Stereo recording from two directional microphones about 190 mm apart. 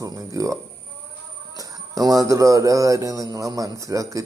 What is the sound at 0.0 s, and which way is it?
A man's voice, 20° right (ahead or behind).